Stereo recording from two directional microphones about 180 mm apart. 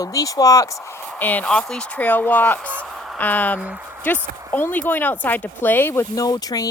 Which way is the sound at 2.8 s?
5° left (ahead or behind).